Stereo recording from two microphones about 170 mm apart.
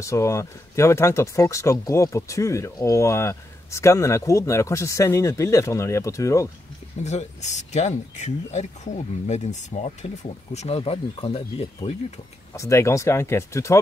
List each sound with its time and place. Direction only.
0.0 s speech: 15° left (ahead or behind)
7.0 s speech: 40° left (ahead or behind)
12.5 s speech: 15° left (ahead or behind)